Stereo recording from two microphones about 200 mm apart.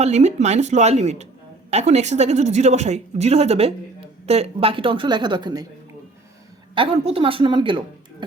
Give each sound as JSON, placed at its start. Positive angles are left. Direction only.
{"t": 0.0, "sound": "a woman's voice", "side_deg": -35}
{"t": 6.7, "sound": "a woman's voice", "side_deg": -30}